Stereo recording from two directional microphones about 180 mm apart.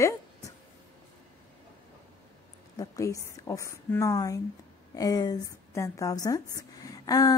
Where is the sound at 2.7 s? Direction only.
20° left (ahead or behind).